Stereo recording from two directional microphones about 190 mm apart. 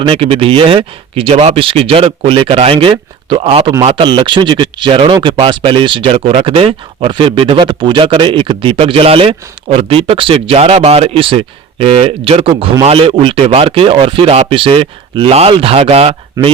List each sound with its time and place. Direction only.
0.0 s speech: 25° right (ahead or behind)